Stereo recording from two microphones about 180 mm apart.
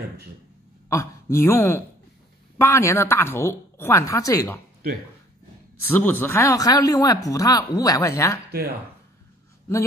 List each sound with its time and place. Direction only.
0.8 s a woman's voice: 15° left (ahead or behind)
5.9 s speech: 10° left (ahead or behind)